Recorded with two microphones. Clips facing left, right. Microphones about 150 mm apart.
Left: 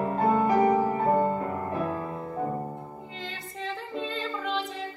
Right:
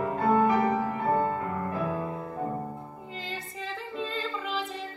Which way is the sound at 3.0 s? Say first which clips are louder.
Right 1 dB; centre (ahead or behind).